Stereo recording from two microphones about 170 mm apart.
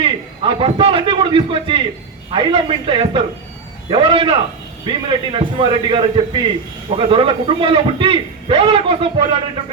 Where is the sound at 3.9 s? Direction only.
30° right (ahead or behind).